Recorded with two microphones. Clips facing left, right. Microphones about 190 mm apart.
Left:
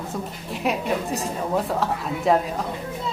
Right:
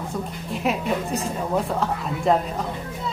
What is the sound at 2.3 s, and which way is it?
Speech, centre (ahead or behind).